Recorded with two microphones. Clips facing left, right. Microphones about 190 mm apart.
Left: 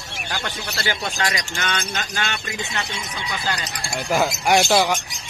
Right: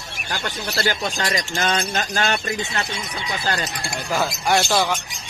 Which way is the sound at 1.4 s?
35° right (ahead or behind).